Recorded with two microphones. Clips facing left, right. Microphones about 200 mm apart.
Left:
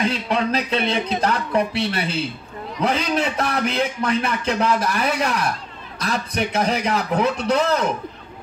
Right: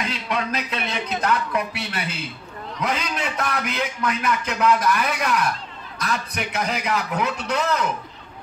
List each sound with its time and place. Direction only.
0.0 s a man's voice: 30° left (ahead or behind)